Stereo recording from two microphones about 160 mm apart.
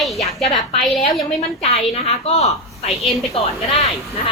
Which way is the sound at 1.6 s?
40° left (ahead or behind).